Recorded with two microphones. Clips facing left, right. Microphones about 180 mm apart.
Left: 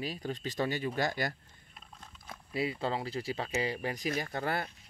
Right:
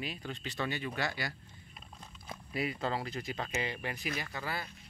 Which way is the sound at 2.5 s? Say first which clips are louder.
Left 2 dB; 30° left (ahead or behind).